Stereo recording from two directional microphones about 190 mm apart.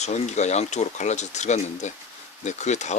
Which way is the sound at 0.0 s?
35° left (ahead or behind).